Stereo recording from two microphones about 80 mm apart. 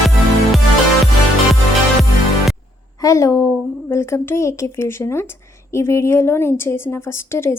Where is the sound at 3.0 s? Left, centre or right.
Left.